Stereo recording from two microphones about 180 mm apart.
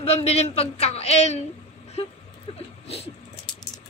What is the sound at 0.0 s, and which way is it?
Speech, 35° left (ahead or behind).